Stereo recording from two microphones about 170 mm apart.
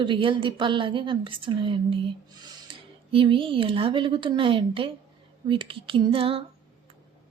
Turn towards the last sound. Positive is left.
turn(degrees=-35)  # may be behind; listen again after turning